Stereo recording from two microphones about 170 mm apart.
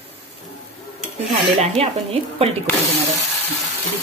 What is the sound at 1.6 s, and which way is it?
Speech, 35° right (ahead or behind).